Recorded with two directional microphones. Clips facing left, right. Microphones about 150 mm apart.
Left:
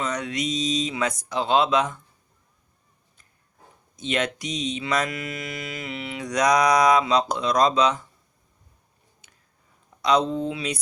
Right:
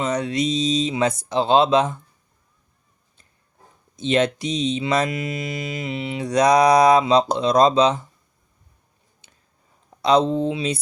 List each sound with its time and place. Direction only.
0.0 s mantra: 30° right (ahead or behind)
3.9 s mantra: 30° right (ahead or behind)
9.2 s a sound: 25° right (ahead or behind)
10.0 s mantra: 30° right (ahead or behind)